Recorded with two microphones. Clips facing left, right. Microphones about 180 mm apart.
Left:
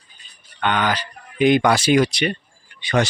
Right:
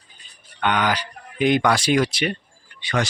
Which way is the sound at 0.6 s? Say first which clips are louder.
Even; 10° right (ahead or behind).